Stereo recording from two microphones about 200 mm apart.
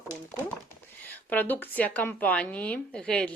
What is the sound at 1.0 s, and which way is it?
Speech, 10° left (ahead or behind).